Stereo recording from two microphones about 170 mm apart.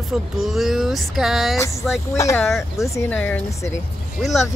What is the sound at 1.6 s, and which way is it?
Speech, 15° left (ahead or behind).